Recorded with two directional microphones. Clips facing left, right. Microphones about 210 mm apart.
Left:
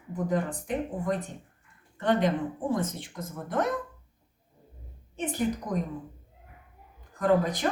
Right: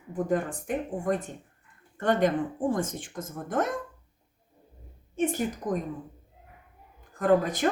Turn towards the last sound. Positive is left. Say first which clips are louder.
# right 1 dB
turn(degrees=-50)  # may be behind; listen again after turning